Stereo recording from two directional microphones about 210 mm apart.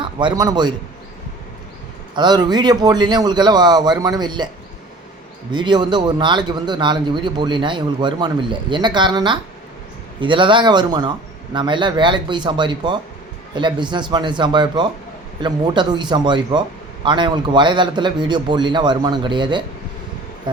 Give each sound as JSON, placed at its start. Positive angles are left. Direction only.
{"t": 0.0, "sound": "a man's voice", "side_deg": -20}
{"t": 2.1, "sound": "a man's voice", "side_deg": -20}
{"t": 5.5, "sound": "a man's voice", "side_deg": -20}